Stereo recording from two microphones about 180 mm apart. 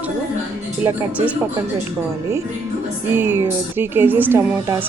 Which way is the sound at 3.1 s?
10° right (ahead or behind).